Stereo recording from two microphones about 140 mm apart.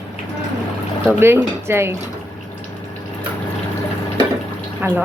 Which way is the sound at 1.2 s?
15° right (ahead or behind).